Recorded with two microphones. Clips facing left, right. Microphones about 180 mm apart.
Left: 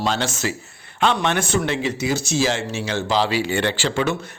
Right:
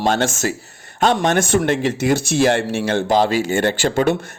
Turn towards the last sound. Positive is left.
turn(degrees=-50)  # may be behind; listen again after turning